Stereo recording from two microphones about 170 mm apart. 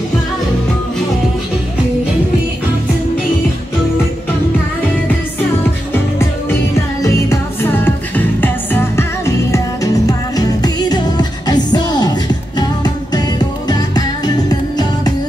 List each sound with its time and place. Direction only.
7.0 s music: 20° left (ahead or behind)